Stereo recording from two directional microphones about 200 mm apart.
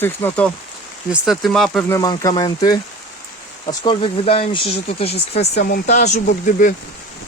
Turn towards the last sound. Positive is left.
turn(degrees=40)  # may be behind; listen again after turning